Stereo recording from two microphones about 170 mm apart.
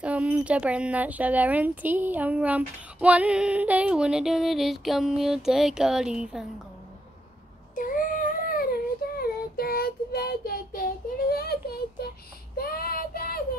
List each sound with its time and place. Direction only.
0.0 s speech: 5° right (ahead or behind)
7.7 s a sound: 55° left (ahead or behind)
12.5 s child singing: 60° left (ahead or behind)